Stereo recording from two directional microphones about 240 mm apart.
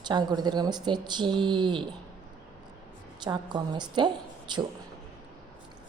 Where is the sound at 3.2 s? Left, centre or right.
Centre.